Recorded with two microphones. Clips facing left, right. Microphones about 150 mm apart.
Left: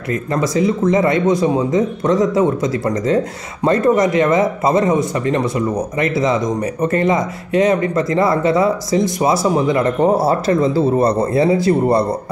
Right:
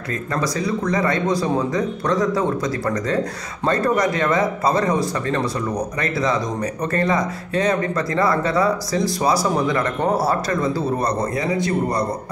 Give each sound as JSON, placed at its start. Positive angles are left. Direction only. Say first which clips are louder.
{"t": 0.1, "sound": "speech", "louder": "left 6 dB", "side_deg": 20}